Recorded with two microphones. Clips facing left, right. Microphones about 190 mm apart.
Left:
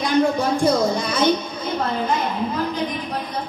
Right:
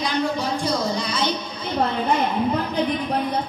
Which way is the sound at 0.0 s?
50° left (ahead or behind).